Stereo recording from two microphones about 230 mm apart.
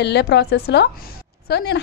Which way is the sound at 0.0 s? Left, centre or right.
Left.